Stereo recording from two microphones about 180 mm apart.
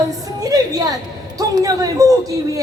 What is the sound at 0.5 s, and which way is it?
Speech, 20° right (ahead or behind).